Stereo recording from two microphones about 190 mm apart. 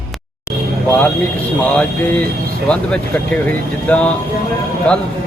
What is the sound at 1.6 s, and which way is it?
Speech, 5° left (ahead or behind).